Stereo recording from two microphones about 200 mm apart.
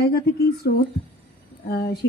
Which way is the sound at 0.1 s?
50° left (ahead or behind).